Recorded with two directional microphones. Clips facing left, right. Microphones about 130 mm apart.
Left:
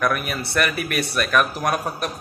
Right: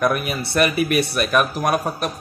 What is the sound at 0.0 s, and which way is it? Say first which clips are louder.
Speech: right 3 dB; 20° right (ahead or behind).